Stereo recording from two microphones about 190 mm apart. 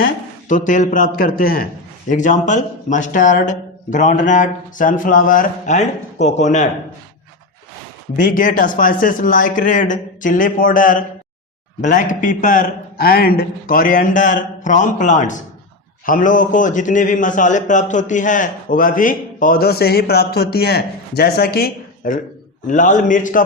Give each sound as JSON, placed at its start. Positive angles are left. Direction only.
{"t": 0.0, "sound": "a man's voice", "side_deg": 45}
{"t": 8.1, "sound": "a man's voice", "side_deg": 45}